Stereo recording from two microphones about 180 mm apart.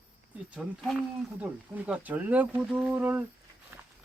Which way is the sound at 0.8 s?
Centre (ahead or behind).